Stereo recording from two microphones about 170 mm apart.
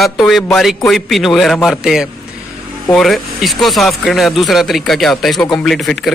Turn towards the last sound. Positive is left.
turn(degrees=0)  # may be behind; listen again after turning